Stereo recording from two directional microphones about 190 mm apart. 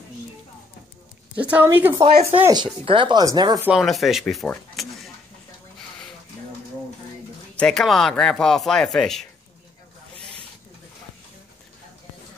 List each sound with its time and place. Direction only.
1.3 s a woman's voice: 10° right (ahead or behind)
2.5 s speech: 25° right (ahead or behind)
3.6 s speech: centre (ahead or behind)
7.5 s speech: 5° left (ahead or behind)